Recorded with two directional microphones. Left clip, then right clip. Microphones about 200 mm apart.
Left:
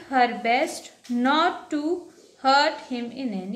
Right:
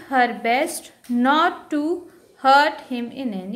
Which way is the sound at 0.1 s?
25° right (ahead or behind).